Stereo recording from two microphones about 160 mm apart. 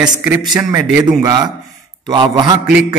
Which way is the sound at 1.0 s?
25° right (ahead or behind).